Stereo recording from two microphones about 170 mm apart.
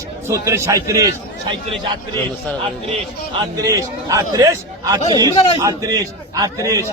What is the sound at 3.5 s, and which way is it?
A man's voice, 20° right (ahead or behind).